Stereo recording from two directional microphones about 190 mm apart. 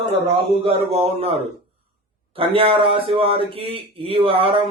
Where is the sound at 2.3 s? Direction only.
30° right (ahead or behind).